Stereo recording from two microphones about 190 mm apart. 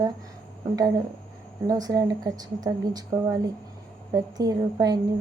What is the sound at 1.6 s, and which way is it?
Speech, 20° right (ahead or behind).